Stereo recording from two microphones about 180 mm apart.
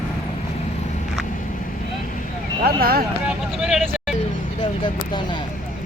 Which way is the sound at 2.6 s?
55° right (ahead or behind).